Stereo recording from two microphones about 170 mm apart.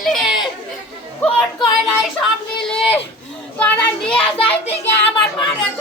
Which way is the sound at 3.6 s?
5° left (ahead or behind).